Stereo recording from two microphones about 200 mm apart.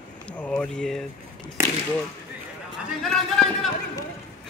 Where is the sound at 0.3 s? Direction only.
5° left (ahead or behind).